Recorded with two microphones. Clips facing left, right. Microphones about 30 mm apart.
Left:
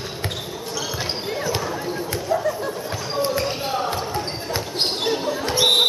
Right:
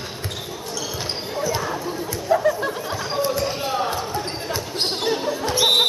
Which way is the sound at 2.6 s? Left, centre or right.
Centre.